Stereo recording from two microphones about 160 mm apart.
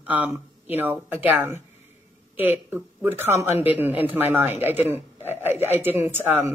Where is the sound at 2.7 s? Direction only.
10° right (ahead or behind).